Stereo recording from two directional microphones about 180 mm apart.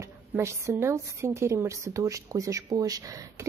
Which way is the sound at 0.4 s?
15° right (ahead or behind).